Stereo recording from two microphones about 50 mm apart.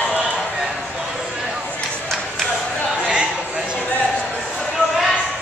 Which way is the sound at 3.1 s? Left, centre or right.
Right.